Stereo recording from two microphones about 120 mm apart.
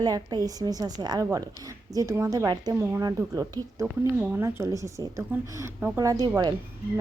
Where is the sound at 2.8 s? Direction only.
25° right (ahead or behind).